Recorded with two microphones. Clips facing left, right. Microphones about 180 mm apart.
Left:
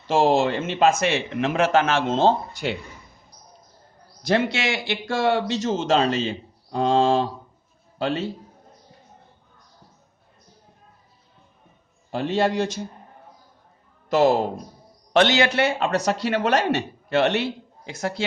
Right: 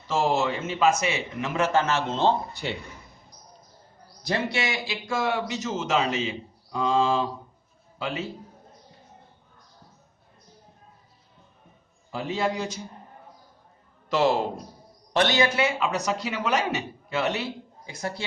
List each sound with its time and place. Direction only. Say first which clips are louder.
0.1 s a man's voice: left 5 dB; 70° left (ahead or behind); by 2.1 s 90° left
4.2 s a man's voice: left 5 dB; 90° left; by 6.1 s 70° left (ahead or behind)
6.2 s a sound: left 3 dB; 70° left (ahead or behind)
7.9 s speech: left 6 dB; 70° left (ahead or behind)
12.1 s speech: left 6 dB; 75° left (ahead or behind)
14.1 s a man's voice: left 4 dB; 45° left (ahead or behind)
15.1 s speech: left 4 dB; 85° left